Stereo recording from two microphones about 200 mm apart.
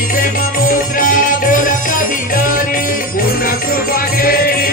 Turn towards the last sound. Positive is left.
turn(degrees=45)  # may be behind; listen again after turning